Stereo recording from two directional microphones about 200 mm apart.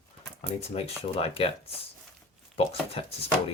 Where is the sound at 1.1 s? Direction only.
30° left (ahead or behind).